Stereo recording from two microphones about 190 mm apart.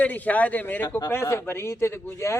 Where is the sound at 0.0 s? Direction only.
10° left (ahead or behind).